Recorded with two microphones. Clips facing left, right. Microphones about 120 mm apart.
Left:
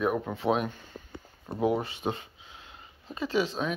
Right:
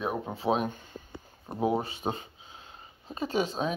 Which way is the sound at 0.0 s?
30° right (ahead or behind).